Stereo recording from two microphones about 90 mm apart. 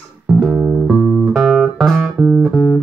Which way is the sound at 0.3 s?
5° right (ahead or behind).